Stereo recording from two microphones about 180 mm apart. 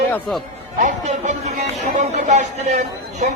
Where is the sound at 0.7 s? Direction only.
40° right (ahead or behind).